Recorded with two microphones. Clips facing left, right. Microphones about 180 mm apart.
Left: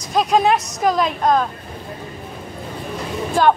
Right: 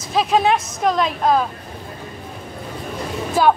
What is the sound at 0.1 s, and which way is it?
A woman's voice, centre (ahead or behind).